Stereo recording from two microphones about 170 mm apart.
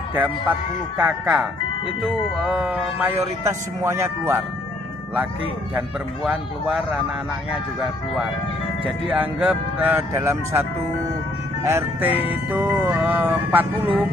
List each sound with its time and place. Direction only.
0.1 s speech: 10° right (ahead or behind)
5.8 s speech: 5° right (ahead or behind)
9.1 s speech: 10° right (ahead or behind)